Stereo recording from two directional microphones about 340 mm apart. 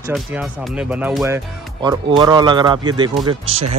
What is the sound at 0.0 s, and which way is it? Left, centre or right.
Speech, centre.